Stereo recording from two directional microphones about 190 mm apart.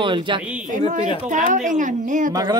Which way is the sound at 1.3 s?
40° right (ahead or behind).